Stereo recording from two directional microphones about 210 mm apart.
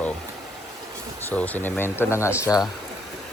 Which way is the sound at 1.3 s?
10° left (ahead or behind).